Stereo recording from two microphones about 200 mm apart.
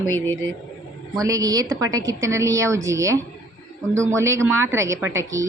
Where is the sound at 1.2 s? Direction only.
15° right (ahead or behind).